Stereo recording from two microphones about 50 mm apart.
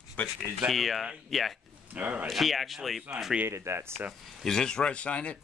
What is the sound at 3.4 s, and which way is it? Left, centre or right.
Speech, right.